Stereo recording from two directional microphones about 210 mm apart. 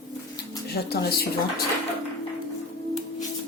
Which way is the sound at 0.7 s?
50° left (ahead or behind).